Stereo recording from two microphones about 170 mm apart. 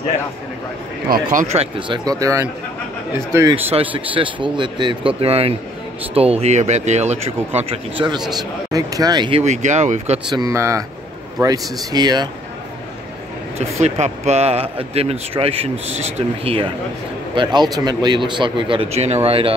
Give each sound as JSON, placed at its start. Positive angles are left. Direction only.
{"t": 1.0, "sound": "speech", "side_deg": -55}
{"t": 3.7, "sound": "speech", "side_deg": -30}
{"t": 9.4, "sound": "speech", "side_deg": -45}
{"t": 10.3, "sound": "speech", "side_deg": -20}
{"t": 13.6, "sound": "speech", "side_deg": -40}